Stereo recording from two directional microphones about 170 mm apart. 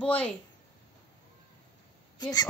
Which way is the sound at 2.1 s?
25° left (ahead or behind).